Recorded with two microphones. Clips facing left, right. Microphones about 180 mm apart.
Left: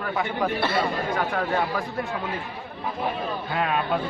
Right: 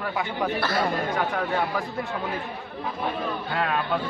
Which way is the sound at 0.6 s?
25° left (ahead or behind).